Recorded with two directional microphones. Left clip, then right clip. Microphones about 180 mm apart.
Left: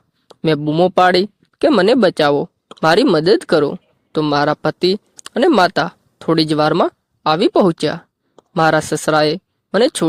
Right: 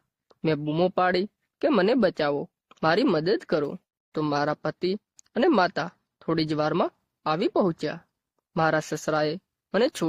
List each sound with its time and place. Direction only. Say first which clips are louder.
0.3 s speech: left 10 dB; 40° left (ahead or behind)